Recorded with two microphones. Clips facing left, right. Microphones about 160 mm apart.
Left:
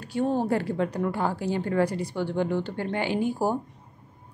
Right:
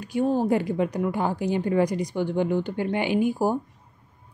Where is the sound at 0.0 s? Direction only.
10° right (ahead or behind).